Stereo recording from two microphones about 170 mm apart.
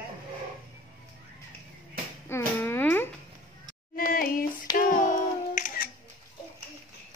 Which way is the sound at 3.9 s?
55° left (ahead or behind).